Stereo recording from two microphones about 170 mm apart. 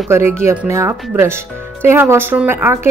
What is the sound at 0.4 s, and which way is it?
Speech, 15° right (ahead or behind).